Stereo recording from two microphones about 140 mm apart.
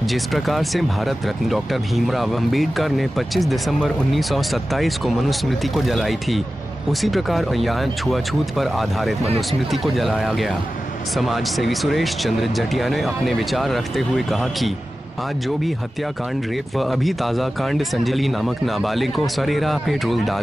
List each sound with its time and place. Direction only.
0.1 s speech: centre (ahead or behind)
16.7 s speech: centre (ahead or behind)